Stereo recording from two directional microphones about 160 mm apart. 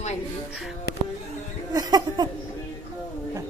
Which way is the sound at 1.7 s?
25° right (ahead or behind).